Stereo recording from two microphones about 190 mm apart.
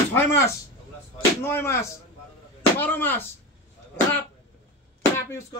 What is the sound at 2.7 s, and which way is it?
Speech, 10° left (ahead or behind).